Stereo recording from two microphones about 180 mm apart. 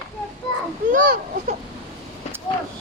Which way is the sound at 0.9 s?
50° right (ahead or behind).